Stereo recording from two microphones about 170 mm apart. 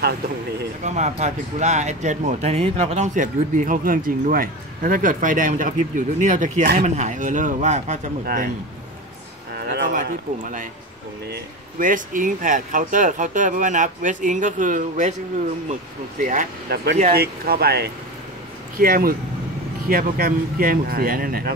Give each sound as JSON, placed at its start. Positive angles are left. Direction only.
{"t": 0.8, "sound": "speech", "side_deg": -45}
{"t": 10.0, "sound": "speech", "side_deg": -50}
{"t": 11.8, "sound": "speech", "side_deg": -50}
{"t": 16.2, "sound": "speech", "side_deg": -55}
{"t": 18.8, "sound": "speech", "side_deg": -60}